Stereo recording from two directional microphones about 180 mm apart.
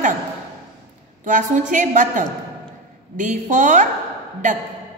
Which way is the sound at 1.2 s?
45° right (ahead or behind).